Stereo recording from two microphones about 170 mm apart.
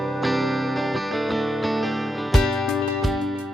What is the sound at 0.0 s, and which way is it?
Music, centre (ahead or behind).